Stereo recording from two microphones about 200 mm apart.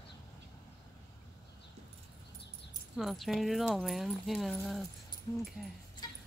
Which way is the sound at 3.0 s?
Centre (ahead or behind).